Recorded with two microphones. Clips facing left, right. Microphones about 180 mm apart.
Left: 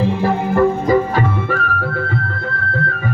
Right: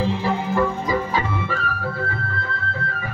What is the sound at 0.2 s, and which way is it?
Music, 55° left (ahead or behind).